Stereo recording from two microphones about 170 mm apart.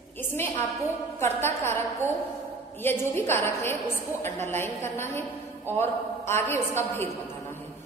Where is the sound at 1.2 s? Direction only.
15° left (ahead or behind).